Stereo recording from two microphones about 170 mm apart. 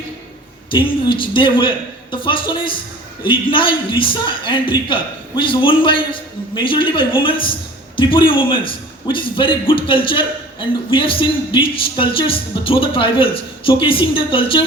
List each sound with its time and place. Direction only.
0.7 s a man's voice: 30° left (ahead or behind)